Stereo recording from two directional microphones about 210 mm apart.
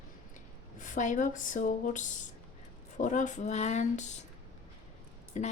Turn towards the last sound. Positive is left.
turn(degrees=35)  # may be behind; listen again after turning